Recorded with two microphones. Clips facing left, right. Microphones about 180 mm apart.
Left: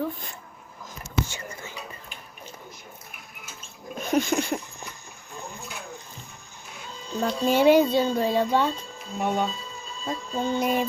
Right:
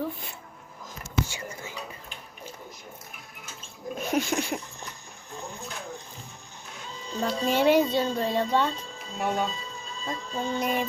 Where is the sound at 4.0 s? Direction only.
5° right (ahead or behind).